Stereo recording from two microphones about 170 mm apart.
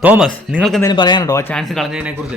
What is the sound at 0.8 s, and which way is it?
Speech, 25° left (ahead or behind).